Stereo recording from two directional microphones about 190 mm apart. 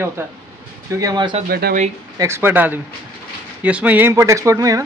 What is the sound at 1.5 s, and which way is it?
Speech, 55° right (ahead or behind).